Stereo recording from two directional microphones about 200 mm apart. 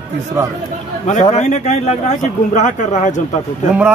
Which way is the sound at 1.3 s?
35° left (ahead or behind).